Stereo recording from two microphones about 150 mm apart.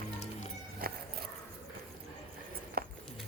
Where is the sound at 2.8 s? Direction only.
90° right.